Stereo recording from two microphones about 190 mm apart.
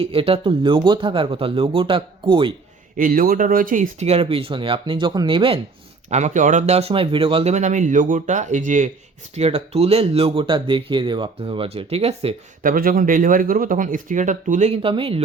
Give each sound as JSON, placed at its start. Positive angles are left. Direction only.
{"t": 0.0, "sound": "speech", "side_deg": -30}
{"t": 3.0, "sound": "speech", "side_deg": -50}
{"t": 12.6, "sound": "speech", "side_deg": -45}